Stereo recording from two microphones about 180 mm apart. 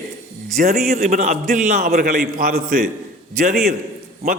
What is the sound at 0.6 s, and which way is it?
A man's voice, 50° right (ahead or behind).